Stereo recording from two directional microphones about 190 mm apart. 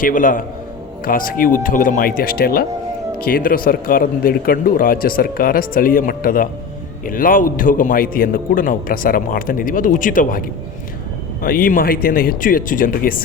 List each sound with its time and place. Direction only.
0.0 s a man's voice: 45° left (ahead or behind)
11.4 s a man's voice: 50° left (ahead or behind)